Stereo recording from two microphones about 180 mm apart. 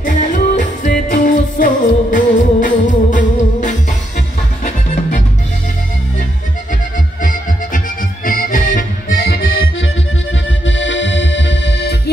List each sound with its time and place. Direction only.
0.0 s music: 45° left (ahead or behind)
8.3 s accordion: 50° left (ahead or behind)
10.7 s music: 90° left